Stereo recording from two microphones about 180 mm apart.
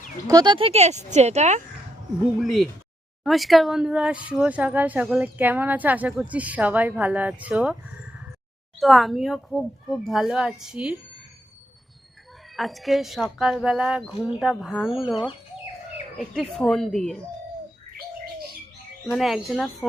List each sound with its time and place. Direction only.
0.3 s speech: 25° right (ahead or behind); by 1.6 s 40° right (ahead or behind)
2.4 s a woman's voice: centre (ahead or behind)
8.8 s a woman's voice: centre (ahead or behind)
12.5 s a woman's voice: centre (ahead or behind)
19.1 s a woman's voice: centre (ahead or behind)